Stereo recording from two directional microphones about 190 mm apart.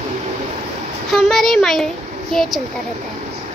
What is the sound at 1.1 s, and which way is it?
Speech, centre (ahead or behind).